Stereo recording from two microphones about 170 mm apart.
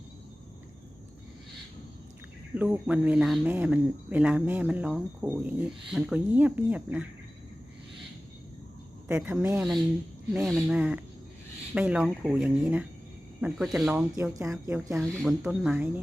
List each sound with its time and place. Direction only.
2.6 s speech: 10° right (ahead or behind)
9.0 s speech: 10° right (ahead or behind)
14.3 s speech: 20° right (ahead or behind)
14.8 s speech: centre (ahead or behind)